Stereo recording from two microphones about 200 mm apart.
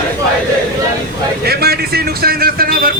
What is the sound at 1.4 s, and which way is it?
Speech, 50° right (ahead or behind).